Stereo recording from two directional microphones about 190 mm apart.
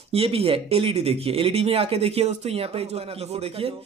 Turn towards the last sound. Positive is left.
turn(degrees=-35)  # may be behind; listen again after turning